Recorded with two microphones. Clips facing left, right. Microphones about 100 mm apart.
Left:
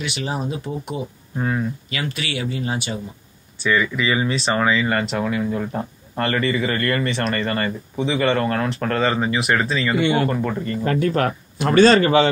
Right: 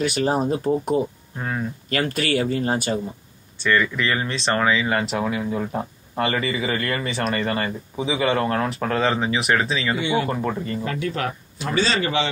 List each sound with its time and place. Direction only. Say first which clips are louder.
0.0 s speech: right 5 dB; 45° right (ahead or behind)
1.4 s speech: left 4 dB; centre (ahead or behind)
1.9 s speech: right 5 dB; 45° right (ahead or behind)
3.6 s speech: left 1 dB; 5° left (ahead or behind)
9.9 s speech: left 5 dB; 60° left (ahead or behind)
10.2 s speech: left 3 dB; 5° right (ahead or behind)
10.8 s speech: left 6 dB; 45° left (ahead or behind)